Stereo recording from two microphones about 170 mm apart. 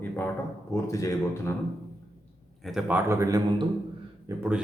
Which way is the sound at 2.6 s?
5° right (ahead or behind).